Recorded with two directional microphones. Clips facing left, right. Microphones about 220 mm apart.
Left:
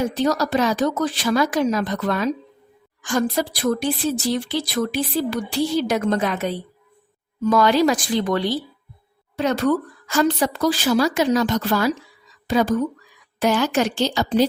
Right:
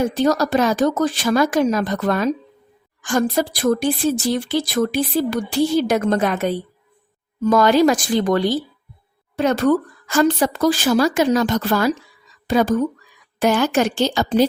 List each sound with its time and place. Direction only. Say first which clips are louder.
0.1 s speech: right 3 dB; 50° right (ahead or behind)